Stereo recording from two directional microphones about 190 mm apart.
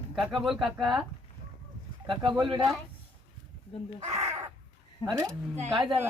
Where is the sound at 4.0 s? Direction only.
35° right (ahead or behind).